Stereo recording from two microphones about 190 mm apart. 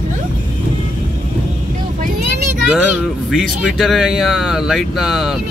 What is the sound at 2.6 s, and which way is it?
Speech, 5° right (ahead or behind).